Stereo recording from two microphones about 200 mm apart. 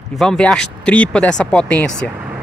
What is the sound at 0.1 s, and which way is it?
Speech, 5° left (ahead or behind).